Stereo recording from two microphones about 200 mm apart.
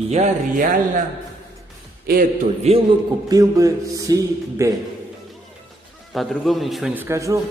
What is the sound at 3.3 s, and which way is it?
A man's voice, 15° right (ahead or behind).